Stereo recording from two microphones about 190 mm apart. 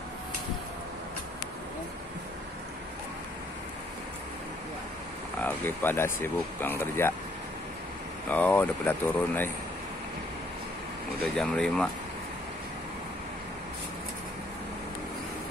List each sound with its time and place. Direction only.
5.4 s speech: 10° left (ahead or behind)
8.3 s speech: 10° left (ahead or behind)
11.3 s speech: 5° left (ahead or behind)